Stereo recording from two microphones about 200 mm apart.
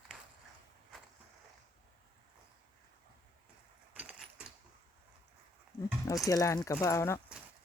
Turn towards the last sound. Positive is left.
turn(degrees=15)  # may be behind; listen again after turning